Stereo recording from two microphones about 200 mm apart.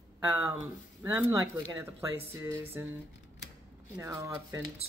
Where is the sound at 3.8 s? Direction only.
15° right (ahead or behind).